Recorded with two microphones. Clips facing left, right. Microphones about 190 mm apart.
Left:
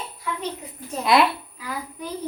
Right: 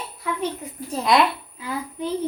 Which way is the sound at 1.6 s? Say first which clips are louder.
Right 5 dB; 25° right (ahead or behind).